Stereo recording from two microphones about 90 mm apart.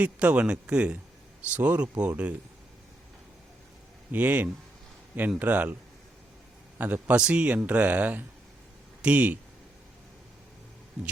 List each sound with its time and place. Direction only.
0.0 s speech: 15° right (ahead or behind)
4.1 s speech: 20° right (ahead or behind)
6.7 s a man's voice: 20° right (ahead or behind)